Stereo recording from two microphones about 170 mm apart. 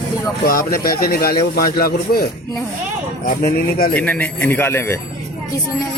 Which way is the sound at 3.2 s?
60° left (ahead or behind).